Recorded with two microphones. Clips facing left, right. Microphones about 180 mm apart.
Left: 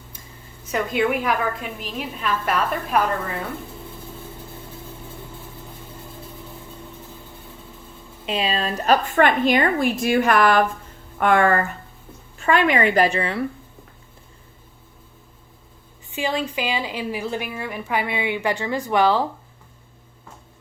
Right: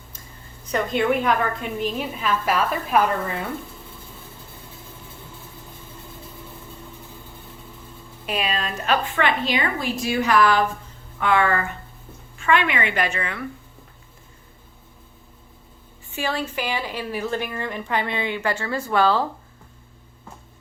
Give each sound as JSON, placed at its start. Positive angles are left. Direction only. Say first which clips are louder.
{"t": 0.7, "sound": "a woman's voice", "louder": "even", "side_deg": 5}
{"t": 8.2, "sound": "a woman's voice", "louder": "left 2 dB", "side_deg": 25}
{"t": 16.1, "sound": "a woman's voice", "louder": "left 2 dB", "side_deg": 15}